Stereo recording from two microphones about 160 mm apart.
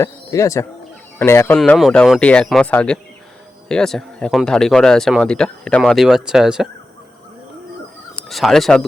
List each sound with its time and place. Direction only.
0.0 s speech: 20° left (ahead or behind)
1.5 s speech: 5° left (ahead or behind)
8.1 s speech: centre (ahead or behind)